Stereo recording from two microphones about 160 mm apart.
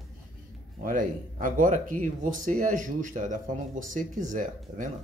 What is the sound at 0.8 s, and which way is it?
Speech, 60° right (ahead or behind).